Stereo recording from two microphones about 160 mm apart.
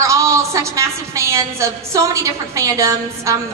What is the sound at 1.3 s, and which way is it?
A woman's voice, 20° right (ahead or behind).